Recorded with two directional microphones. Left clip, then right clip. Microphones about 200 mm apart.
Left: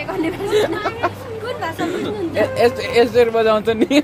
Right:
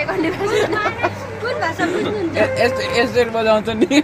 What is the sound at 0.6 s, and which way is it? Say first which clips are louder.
Speech: left 1 dB; 50° left (ahead or behind).